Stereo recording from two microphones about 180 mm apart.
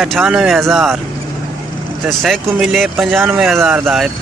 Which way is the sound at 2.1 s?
Centre (ahead or behind).